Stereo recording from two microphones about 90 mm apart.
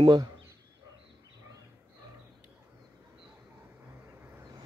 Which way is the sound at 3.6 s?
25° right (ahead or behind).